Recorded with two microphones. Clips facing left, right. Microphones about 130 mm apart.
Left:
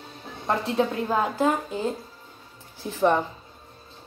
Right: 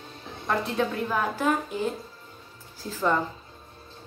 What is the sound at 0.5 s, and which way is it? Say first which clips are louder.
A woman's voice: left 2 dB; 30° left (ahead or behind).